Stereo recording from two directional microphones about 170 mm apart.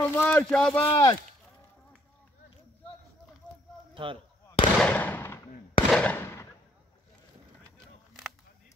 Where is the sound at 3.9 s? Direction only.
30° right (ahead or behind).